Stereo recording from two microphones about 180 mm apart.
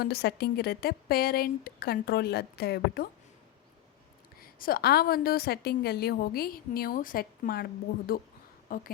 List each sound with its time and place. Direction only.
0.0 s a woman's voice: 60° left (ahead or behind)
4.4 s a woman's voice: 55° left (ahead or behind)